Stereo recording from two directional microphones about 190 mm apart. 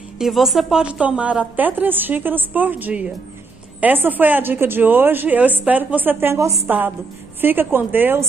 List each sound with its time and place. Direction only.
0.2 s a woman's voice: centre (ahead or behind)